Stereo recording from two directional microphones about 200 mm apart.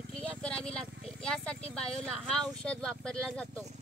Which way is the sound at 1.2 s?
5° left (ahead or behind).